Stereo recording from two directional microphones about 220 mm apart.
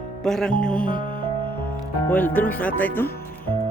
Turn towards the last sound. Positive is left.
turn(degrees=10)  # may be behind; listen again after turning